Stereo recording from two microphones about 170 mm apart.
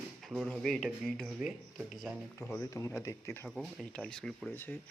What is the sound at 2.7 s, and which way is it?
Speech, 15° left (ahead or behind).